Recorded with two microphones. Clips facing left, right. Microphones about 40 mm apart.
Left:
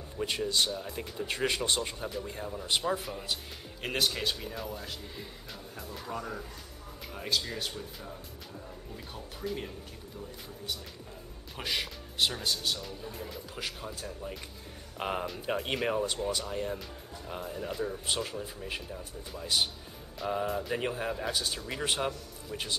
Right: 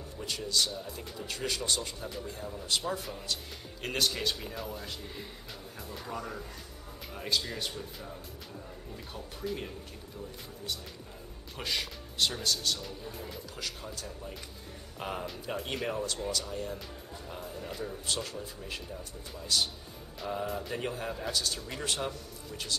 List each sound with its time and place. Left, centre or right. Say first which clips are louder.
0.2 s speech: left 3 dB; left
3.0 s speech: left 1 dB; centre
11.5 s speech: left 1 dB; centre
12.7 s speech: left 1 dB; centre
13.8 s speech: left 2 dB; centre
15.0 s speech: left 4 dB; left
17.6 s speech: left 5 dB; centre
18.0 s speech: left 2 dB; centre
20.4 s speech: left 3 dB; centre
20.7 s speech: left 3 dB; centre